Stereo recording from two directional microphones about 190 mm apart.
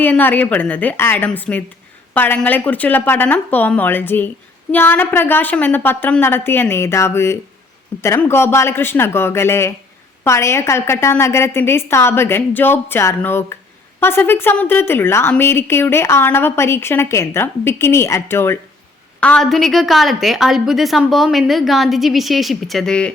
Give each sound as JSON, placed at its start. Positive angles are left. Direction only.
{"t": 0.0, "sound": "a woman's voice", "side_deg": 10}